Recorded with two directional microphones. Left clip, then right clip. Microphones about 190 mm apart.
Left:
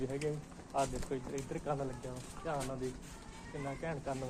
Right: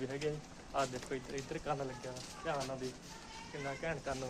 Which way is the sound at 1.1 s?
10° right (ahead or behind).